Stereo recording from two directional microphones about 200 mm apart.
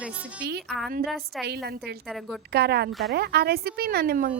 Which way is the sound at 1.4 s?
50° right (ahead or behind).